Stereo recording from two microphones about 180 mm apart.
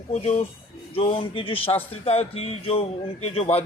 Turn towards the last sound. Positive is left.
turn(degrees=35)  # may be behind; listen again after turning